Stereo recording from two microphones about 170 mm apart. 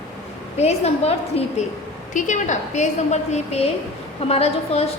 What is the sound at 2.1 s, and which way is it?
A woman's voice, 45° left (ahead or behind).